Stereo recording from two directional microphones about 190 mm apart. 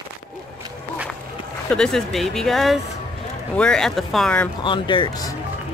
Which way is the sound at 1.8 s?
Centre (ahead or behind).